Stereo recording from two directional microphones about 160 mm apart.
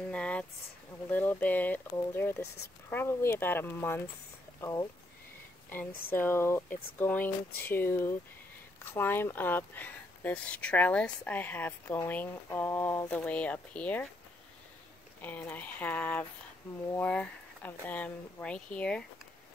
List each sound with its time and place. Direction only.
0.1 s a sound: 5° left (ahead or behind)
1.1 s speech: 10° left (ahead or behind)
6.0 s speech: 15° left (ahead or behind)
15.2 s speech: 10° left (ahead or behind)